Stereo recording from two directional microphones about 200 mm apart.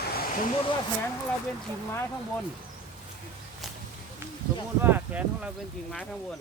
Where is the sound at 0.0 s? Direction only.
50° left (ahead or behind).